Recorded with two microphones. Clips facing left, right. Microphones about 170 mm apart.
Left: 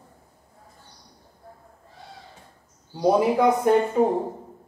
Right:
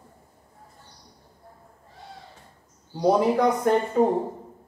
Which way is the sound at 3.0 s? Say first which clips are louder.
Left 1 dB; 10° left (ahead or behind).